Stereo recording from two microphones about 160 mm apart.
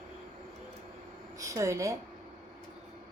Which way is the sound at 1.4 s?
20° right (ahead or behind).